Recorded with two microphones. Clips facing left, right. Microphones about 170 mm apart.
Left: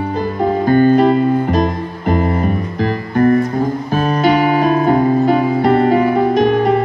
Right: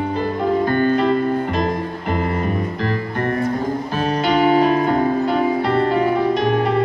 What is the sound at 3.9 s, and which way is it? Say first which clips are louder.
Music: left 5 dB; 50° left (ahead or behind).